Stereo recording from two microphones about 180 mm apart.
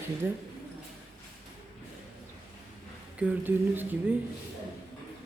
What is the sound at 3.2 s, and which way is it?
Speech, 10° right (ahead or behind).